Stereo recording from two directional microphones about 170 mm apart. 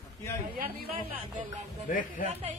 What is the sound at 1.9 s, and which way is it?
Speech, 55° left (ahead or behind).